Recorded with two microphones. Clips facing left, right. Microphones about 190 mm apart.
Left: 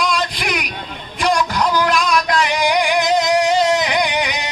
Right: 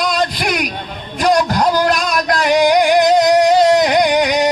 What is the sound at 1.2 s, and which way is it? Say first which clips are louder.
Music: right 4 dB; 40° right (ahead or behind).